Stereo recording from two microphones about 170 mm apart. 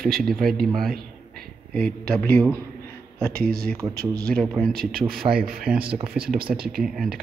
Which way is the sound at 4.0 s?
65° right (ahead or behind).